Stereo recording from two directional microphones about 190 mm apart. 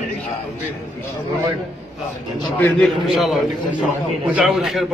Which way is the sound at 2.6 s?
Centre (ahead or behind).